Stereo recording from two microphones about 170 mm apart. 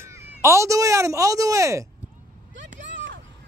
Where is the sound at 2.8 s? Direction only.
90° right.